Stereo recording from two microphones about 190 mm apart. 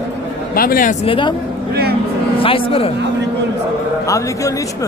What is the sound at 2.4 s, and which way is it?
Speech, 30° left (ahead or behind).